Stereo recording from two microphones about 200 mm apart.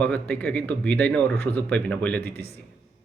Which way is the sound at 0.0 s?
5° left (ahead or behind).